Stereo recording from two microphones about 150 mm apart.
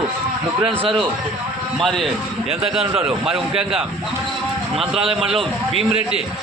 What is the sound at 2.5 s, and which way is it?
Speech, 40° right (ahead or behind).